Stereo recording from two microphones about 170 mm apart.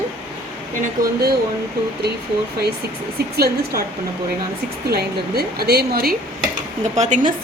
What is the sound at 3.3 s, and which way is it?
Speech, 65° right (ahead or behind).